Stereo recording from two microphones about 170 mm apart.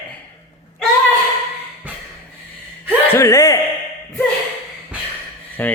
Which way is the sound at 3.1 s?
15° left (ahead or behind).